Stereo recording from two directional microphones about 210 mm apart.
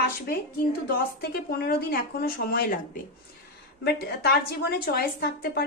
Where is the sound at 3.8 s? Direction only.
50° left (ahead or behind).